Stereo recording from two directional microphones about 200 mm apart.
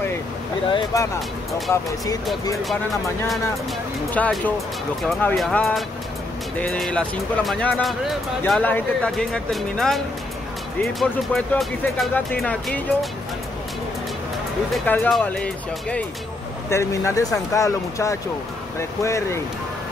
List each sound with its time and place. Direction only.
1.7 s speech: 10° left (ahead or behind)
4.1 s speech: 10° left (ahead or behind)
14.7 s speech: centre (ahead or behind)